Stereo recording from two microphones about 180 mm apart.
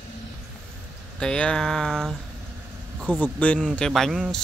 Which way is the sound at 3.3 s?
5° left (ahead or behind).